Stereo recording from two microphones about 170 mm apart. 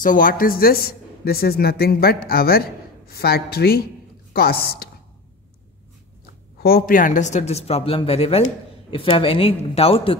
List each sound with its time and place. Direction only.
0.0 s a man's voice: 55° left (ahead or behind)
6.6 s speech: 60° left (ahead or behind); by 10.1 s 35° left (ahead or behind)